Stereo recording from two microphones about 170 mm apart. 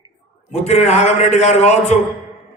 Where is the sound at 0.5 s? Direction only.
40° left (ahead or behind).